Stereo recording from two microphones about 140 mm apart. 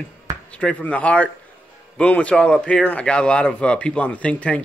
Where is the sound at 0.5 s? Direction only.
10° left (ahead or behind).